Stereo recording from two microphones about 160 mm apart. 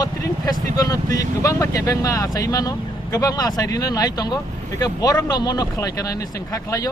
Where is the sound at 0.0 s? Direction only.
25° left (ahead or behind).